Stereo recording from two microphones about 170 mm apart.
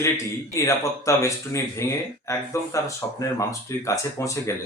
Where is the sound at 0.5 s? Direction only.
20° left (ahead or behind).